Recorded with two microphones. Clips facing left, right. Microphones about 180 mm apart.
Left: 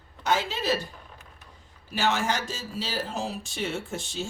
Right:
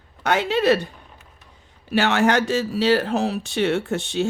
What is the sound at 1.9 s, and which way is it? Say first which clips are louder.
Speech: right 8 dB; 70° right (ahead or behind).